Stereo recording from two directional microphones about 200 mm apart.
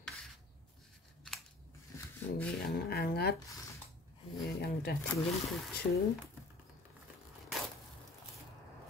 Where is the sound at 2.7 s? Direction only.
50° left (ahead or behind).